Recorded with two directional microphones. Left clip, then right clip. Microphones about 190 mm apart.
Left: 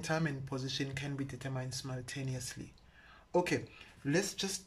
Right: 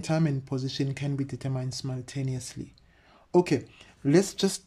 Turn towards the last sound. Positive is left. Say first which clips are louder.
# right 10 dB
turn(degrees=-40)  # may be behind; listen again after turning